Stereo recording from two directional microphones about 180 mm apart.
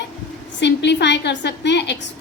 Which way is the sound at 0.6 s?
70° left (ahead or behind).